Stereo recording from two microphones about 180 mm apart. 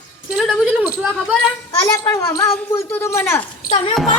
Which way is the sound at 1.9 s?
20° left (ahead or behind).